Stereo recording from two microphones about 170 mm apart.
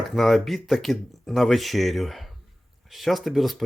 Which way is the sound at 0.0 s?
Centre (ahead or behind).